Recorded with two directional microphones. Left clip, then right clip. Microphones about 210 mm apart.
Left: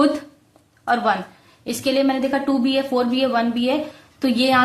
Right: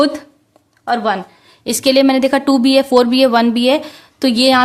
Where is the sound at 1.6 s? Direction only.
45° right (ahead or behind).